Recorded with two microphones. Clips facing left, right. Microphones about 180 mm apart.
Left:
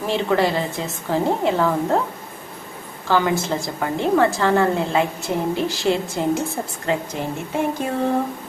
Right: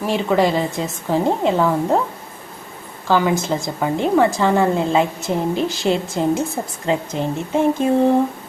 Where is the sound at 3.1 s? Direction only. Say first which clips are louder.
Right 2 dB; 15° right (ahead or behind).